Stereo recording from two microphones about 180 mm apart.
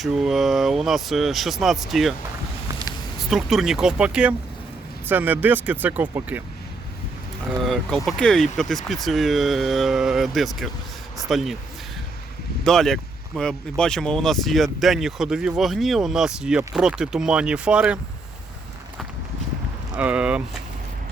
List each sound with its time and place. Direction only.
0.0 s speech: centre (ahead or behind)
3.2 s speech: centre (ahead or behind)
7.6 s speech: centre (ahead or behind)
12.6 s speech: centre (ahead or behind)
20.0 s speech: 5° right (ahead or behind)